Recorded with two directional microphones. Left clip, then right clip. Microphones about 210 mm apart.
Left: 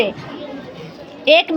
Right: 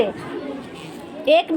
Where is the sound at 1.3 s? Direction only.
15° left (ahead or behind).